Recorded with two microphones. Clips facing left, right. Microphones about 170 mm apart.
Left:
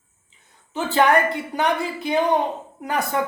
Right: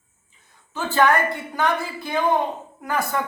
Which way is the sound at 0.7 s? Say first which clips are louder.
Left 1 dB; 15° left (ahead or behind).